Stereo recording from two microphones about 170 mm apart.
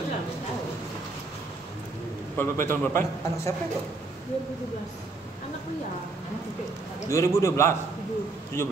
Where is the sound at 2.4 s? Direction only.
15° left (ahead or behind).